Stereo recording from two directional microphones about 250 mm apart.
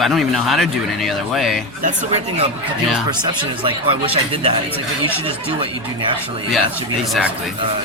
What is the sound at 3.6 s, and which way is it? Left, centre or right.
Speech, right.